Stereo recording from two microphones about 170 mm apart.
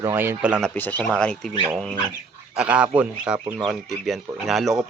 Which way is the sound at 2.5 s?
5° right (ahead or behind).